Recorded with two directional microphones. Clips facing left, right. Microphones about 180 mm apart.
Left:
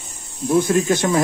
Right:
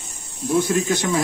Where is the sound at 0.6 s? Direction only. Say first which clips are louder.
Left 3 dB; 55° left (ahead or behind).